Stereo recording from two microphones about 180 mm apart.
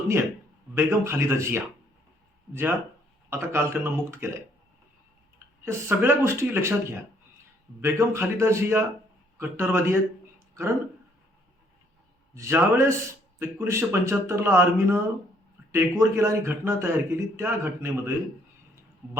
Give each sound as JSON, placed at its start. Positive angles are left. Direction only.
{"t": 0.7, "sound": "speech", "side_deg": -15}
{"t": 5.6, "sound": "speech", "side_deg": -15}
{"t": 7.8, "sound": "speech", "side_deg": -15}
{"t": 12.3, "sound": "speech", "side_deg": -15}